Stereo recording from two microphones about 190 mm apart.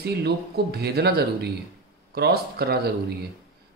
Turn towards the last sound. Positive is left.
turn(degrees=-55)  # may be behind; listen again after turning